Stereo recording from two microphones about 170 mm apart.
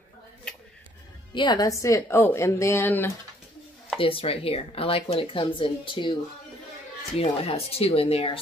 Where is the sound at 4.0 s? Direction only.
30° left (ahead or behind).